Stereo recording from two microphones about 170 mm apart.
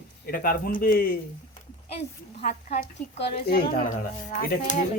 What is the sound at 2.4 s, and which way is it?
Speech, 55° left (ahead or behind).